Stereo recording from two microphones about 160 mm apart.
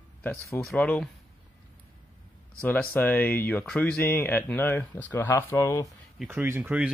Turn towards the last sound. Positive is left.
turn(degrees=-10)  # may be behind; listen again after turning